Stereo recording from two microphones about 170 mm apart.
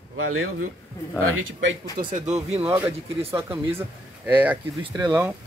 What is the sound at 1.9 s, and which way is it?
Speech, 45° right (ahead or behind).